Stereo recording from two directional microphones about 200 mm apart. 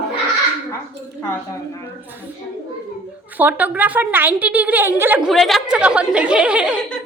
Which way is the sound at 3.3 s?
10° right (ahead or behind).